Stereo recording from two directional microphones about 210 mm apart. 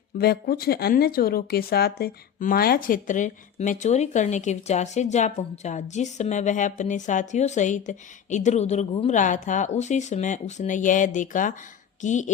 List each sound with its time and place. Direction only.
0.2 s speech: 50° left (ahead or behind)